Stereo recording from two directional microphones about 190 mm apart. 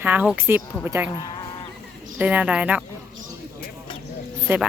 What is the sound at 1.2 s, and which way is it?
Speech, 20° left (ahead or behind).